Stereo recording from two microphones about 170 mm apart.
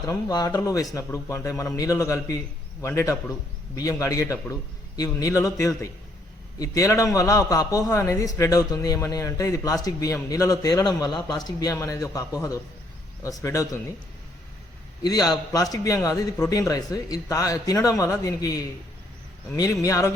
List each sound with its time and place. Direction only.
0.1 s a man's voice: 20° left (ahead or behind)
15.0 s a man's voice: 25° left (ahead or behind)